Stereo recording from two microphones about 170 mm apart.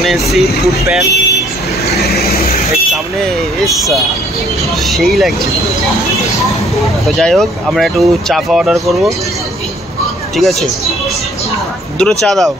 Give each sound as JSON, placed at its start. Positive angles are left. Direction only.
{"t": 0.0, "sound": "speech", "side_deg": 0}
{"t": 2.0, "sound": "vehicle", "side_deg": 65}
{"t": 3.6, "sound": "speech", "side_deg": 0}
{"t": 7.1, "sound": "speech", "side_deg": 0}
{"t": 10.3, "sound": "speech", "side_deg": 0}
{"t": 12.0, "sound": "speech", "side_deg": 0}